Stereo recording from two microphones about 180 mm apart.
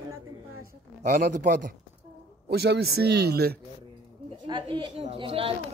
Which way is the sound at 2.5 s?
65° right (ahead or behind).